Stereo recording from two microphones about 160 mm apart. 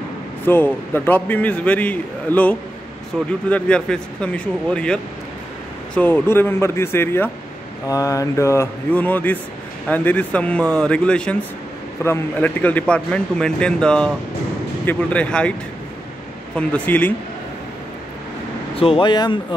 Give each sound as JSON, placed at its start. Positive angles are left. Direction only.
{"t": 0.5, "sound": "speech", "side_deg": 10}
{"t": 16.5, "sound": "speech", "side_deg": 10}
{"t": 18.8, "sound": "speech", "side_deg": 35}